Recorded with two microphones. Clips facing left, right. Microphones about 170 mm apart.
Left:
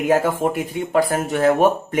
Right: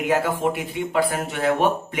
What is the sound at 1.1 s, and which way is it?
Speech, 40° left (ahead or behind).